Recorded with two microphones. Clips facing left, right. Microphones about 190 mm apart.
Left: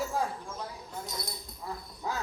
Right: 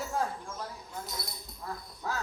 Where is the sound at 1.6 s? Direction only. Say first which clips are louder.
Left 1 dB; 15° left (ahead or behind).